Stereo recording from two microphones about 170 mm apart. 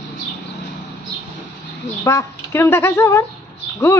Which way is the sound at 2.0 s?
15° left (ahead or behind).